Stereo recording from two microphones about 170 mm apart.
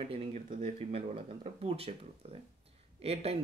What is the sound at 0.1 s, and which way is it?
Speech, 35° right (ahead or behind).